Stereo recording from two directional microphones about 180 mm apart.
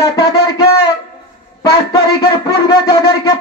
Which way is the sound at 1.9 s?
20° left (ahead or behind).